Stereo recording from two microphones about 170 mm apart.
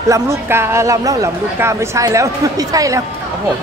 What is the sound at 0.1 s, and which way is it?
Speech, 15° right (ahead or behind).